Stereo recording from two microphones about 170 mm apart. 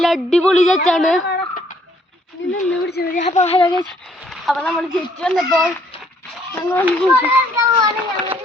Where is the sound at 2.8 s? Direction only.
75° left (ahead or behind).